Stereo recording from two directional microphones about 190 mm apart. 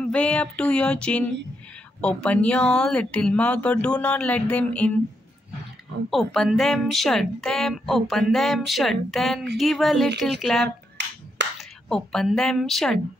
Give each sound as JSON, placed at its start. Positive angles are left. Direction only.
{"t": 0.0, "sound": "speech", "side_deg": 5}
{"t": 6.0, "sound": "speech", "side_deg": 0}
{"t": 11.4, "sound": "a sound", "side_deg": -65}
{"t": 11.9, "sound": "speech", "side_deg": 0}